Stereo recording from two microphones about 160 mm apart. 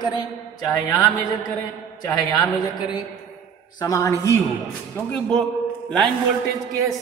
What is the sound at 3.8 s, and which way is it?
Speech, 20° left (ahead or behind).